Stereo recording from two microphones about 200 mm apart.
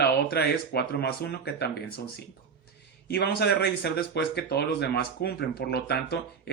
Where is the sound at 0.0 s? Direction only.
55° left (ahead or behind).